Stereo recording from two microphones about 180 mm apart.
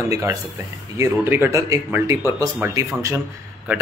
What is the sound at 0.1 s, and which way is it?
Speech, 15° right (ahead or behind).